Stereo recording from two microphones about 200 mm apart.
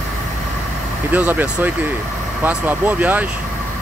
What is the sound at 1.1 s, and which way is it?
Speech, 10° right (ahead or behind).